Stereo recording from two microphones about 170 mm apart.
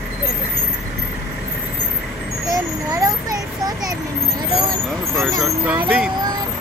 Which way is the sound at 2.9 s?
20° right (ahead or behind).